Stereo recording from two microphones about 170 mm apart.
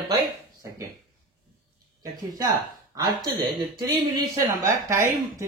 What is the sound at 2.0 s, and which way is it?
Speech, 20° right (ahead or behind).